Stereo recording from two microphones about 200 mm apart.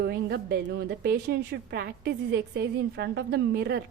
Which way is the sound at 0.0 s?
55° right (ahead or behind).